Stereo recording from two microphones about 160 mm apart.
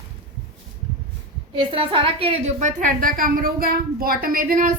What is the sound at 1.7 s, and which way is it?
A woman's voice, 35° right (ahead or behind).